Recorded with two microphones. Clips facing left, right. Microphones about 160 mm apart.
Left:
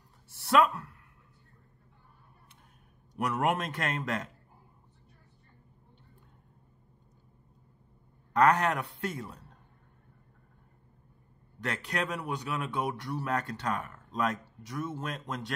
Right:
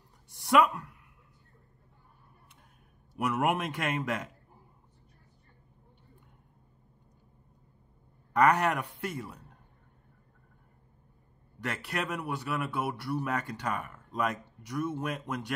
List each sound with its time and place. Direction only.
0.3 s a sound: 15° right (ahead or behind)
3.2 s speech: 10° right (ahead or behind)
8.3 s speech: 10° right (ahead or behind)
11.6 s speech: 10° right (ahead or behind)